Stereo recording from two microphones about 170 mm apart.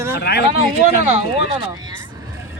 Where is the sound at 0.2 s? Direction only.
75° left (ahead or behind).